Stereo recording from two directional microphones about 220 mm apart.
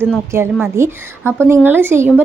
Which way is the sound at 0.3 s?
10° right (ahead or behind).